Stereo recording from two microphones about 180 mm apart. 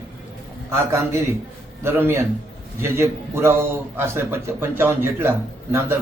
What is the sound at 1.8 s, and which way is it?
Speech, 15° right (ahead or behind).